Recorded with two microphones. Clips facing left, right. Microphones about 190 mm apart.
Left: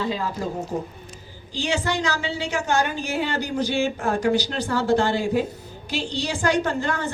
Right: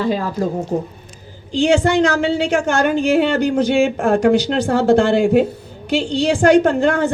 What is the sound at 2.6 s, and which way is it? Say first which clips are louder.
A woman's voice: right 6 dB; 80° right.